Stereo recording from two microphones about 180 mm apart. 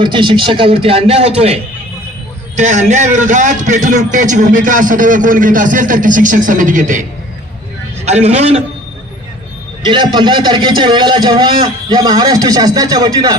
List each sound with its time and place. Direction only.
0.0 s a man's voice: 25° right (ahead or behind)
2.6 s a man's voice: 40° right (ahead or behind)
8.0 s a man's voice: 35° right (ahead or behind)
9.8 s a man's voice: 25° right (ahead or behind)